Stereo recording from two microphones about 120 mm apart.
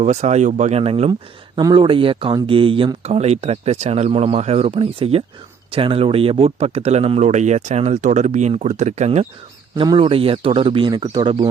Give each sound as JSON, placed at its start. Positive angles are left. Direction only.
{"t": 0.0, "sound": "speech", "side_deg": -65}
{"t": 1.5, "sound": "speech", "side_deg": -40}
{"t": 9.7, "sound": "speech", "side_deg": -40}